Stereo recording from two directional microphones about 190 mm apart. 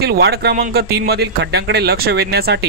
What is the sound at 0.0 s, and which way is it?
Speech, 55° right (ahead or behind).